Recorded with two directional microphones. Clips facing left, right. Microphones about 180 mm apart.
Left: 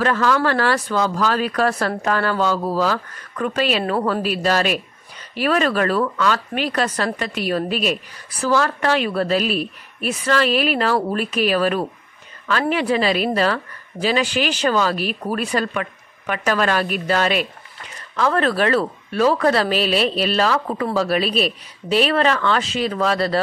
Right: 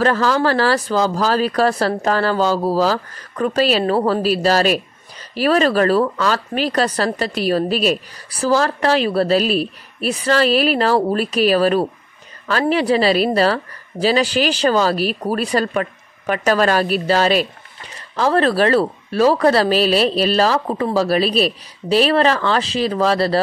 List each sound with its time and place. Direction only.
0.0 s speech: 35° right (ahead or behind)